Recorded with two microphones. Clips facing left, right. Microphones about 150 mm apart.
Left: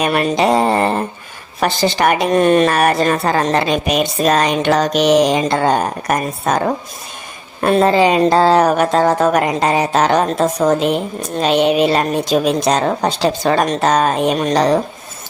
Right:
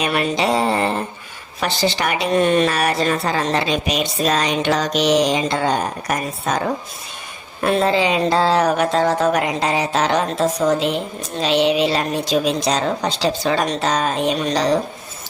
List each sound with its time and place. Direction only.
0.0 s speech: 45° left (ahead or behind)
7.6 s speech: 45° left (ahead or behind)